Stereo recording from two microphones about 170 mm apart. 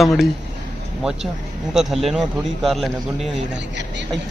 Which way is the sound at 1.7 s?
Centre (ahead or behind).